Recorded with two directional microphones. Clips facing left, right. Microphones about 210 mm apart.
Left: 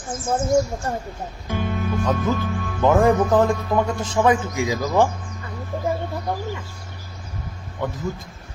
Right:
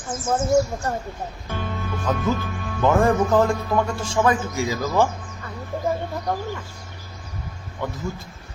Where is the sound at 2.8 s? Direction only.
15° left (ahead or behind).